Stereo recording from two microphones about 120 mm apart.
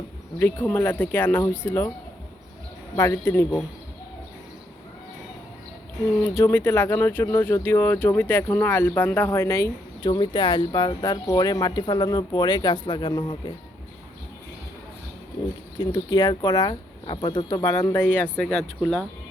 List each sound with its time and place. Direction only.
0.3 s speech: 15° left (ahead or behind)
2.9 s speech: 25° left (ahead or behind)
6.1 s speech: 20° left (ahead or behind)
10.0 s speech: 40° left (ahead or behind)
15.8 s speech: 35° left (ahead or behind); by 18.4 s 15° left (ahead or behind)